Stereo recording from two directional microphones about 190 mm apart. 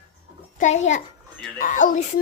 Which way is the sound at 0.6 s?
40° left (ahead or behind).